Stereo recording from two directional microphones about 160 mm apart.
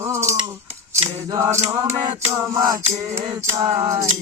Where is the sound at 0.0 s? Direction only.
15° right (ahead or behind).